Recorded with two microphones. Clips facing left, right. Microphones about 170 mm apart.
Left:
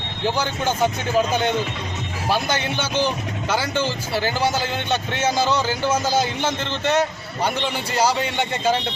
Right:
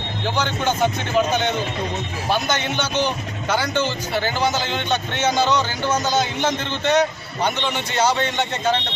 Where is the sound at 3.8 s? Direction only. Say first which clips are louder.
Even; 35° left (ahead or behind).